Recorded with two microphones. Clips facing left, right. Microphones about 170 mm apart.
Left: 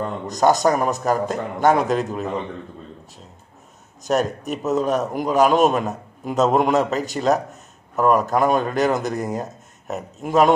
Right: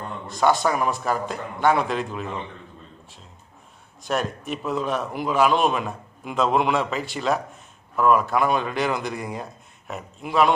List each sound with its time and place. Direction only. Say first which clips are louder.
0.3 s a man's voice: left 4 dB; 40° left (ahead or behind)
4.0 s a man's voice: left 5 dB; 45° left (ahead or behind)